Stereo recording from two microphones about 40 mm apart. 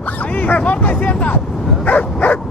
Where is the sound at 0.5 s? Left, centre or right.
Left.